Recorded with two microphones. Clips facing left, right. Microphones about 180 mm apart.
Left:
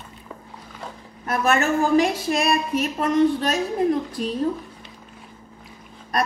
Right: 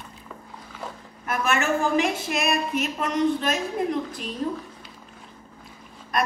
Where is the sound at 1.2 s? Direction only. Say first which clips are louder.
Left 3 dB; 35° left (ahead or behind).